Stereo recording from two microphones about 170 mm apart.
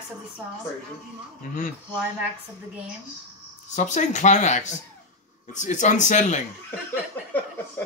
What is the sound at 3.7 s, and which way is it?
Speech, 45° left (ahead or behind).